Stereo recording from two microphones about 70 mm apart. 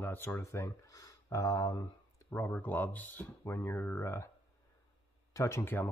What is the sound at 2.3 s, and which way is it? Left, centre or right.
Speech, left.